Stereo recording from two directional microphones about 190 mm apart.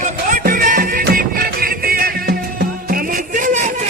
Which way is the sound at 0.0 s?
45° right (ahead or behind).